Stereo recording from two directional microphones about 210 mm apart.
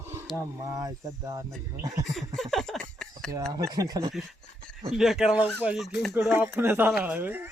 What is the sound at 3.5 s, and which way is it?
Speech, 20° right (ahead or behind).